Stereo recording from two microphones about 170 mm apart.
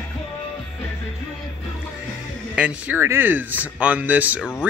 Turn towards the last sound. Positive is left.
turn(degrees=-10)  # may be behind; listen again after turning